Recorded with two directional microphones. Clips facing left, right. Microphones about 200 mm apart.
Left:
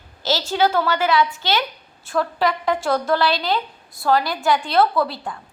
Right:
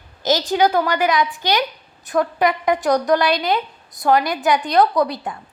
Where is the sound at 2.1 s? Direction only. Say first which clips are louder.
Right 3 dB; 20° right (ahead or behind).